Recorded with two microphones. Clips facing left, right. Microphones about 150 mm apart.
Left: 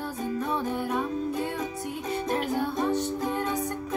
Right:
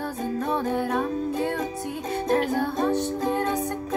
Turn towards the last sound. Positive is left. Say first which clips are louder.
# right 4 dB
turn(degrees=-50)  # may be behind; listen again after turning